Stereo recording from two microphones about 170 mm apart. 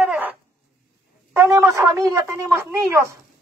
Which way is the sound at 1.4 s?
20° right (ahead or behind).